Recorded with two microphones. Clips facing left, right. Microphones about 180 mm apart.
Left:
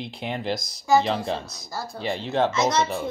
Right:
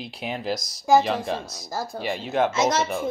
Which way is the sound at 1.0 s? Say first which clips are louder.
Even; 20° left (ahead or behind).